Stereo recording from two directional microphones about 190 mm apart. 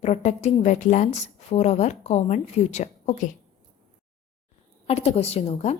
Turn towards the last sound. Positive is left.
turn(degrees=35)  # may be behind; listen again after turning